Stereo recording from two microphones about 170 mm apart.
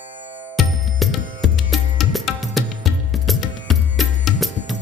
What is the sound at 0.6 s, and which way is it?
Music, centre (ahead or behind).